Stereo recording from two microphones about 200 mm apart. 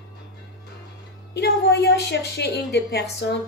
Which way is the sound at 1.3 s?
55° left (ahead or behind).